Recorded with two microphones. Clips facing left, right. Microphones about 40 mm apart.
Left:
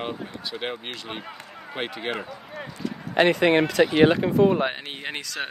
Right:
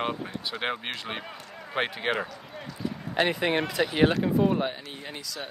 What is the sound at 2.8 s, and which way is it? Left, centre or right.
Speech, left.